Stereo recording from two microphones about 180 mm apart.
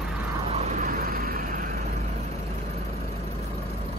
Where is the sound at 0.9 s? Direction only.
55° right (ahead or behind).